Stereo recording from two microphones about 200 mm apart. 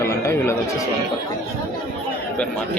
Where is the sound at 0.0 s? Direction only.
15° left (ahead or behind).